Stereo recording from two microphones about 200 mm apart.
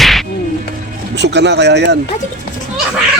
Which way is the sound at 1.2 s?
60° right (ahead or behind).